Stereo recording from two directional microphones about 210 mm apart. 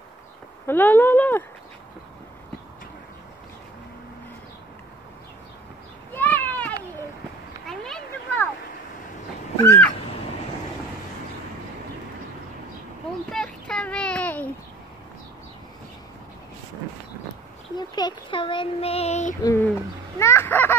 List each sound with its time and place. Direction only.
0.7 s speech: 10° left (ahead or behind)
6.1 s a sound: 10° left (ahead or behind)
9.6 s speech: 10° left (ahead or behind)
13.3 s a sound: 5° left (ahead or behind)
17.7 s speech: 20° left (ahead or behind)
19.4 s owl: 10° left (ahead or behind)